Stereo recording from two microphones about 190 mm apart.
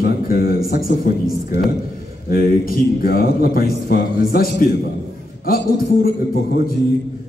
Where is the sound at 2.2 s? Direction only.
50° left (ahead or behind).